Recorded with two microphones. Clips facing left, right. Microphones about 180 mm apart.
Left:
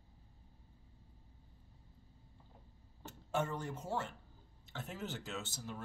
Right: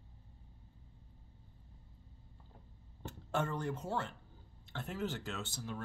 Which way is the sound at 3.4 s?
5° left (ahead or behind).